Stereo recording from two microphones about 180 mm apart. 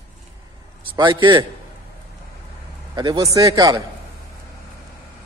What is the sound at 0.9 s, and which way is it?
Speech, 25° right (ahead or behind).